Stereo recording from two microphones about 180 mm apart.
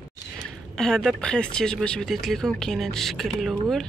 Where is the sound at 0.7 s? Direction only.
5° left (ahead or behind).